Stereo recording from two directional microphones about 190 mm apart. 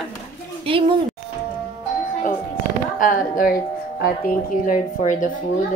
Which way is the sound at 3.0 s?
45° left (ahead or behind).